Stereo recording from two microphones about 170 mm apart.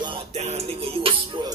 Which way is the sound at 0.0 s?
35° right (ahead or behind).